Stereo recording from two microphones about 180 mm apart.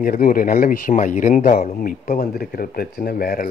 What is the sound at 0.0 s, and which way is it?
Speech, 50° left (ahead or behind).